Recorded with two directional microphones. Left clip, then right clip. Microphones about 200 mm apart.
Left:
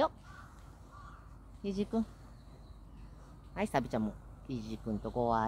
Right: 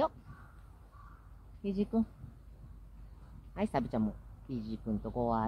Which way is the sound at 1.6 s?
20° right (ahead or behind).